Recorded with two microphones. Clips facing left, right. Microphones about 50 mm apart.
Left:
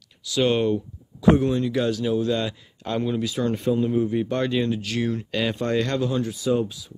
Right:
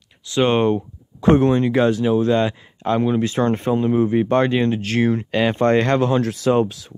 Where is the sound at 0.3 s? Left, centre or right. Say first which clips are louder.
Right 4 dB; right.